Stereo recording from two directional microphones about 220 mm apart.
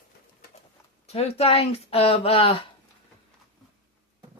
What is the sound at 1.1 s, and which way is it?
Speech, 30° left (ahead or behind).